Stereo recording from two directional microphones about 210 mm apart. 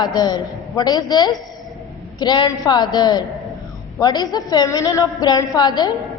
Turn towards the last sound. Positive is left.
turn(degrees=20)  # may be behind; listen again after turning